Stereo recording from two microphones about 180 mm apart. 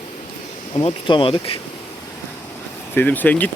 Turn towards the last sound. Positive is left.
turn(degrees=10)  # may be behind; listen again after turning